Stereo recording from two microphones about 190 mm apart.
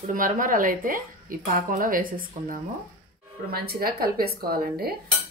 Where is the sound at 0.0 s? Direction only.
45° right (ahead or behind).